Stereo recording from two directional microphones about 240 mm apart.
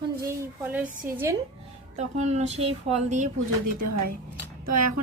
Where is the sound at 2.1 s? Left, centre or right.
Right.